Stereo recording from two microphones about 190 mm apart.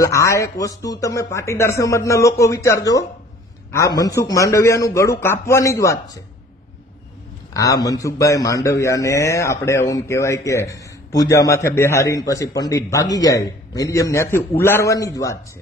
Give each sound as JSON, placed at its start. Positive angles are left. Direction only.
{"t": 0.0, "sound": "a man's voice", "side_deg": 15}
{"t": 7.5, "sound": "a man's voice", "side_deg": 20}